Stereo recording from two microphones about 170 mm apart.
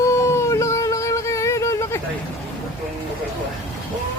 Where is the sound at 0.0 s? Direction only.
15° left (ahead or behind).